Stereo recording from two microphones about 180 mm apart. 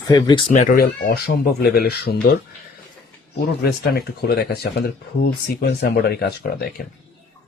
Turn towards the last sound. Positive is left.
turn(degrees=60)  # may be behind; listen again after turning